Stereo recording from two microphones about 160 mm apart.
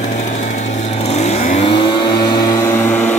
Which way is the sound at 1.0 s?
45° left (ahead or behind).